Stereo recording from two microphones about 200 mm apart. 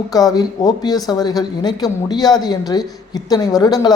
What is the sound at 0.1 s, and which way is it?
Speech, 20° left (ahead or behind).